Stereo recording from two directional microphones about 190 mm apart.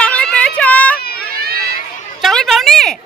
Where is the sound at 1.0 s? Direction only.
55° left (ahead or behind).